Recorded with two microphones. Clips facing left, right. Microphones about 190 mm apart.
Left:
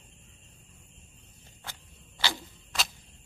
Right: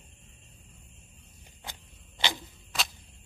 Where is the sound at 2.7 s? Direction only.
Centre (ahead or behind).